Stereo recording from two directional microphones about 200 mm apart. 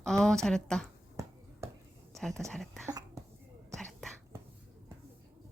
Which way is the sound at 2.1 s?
Centre (ahead or behind).